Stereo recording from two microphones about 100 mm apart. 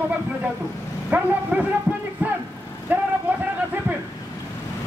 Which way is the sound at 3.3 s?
15° right (ahead or behind).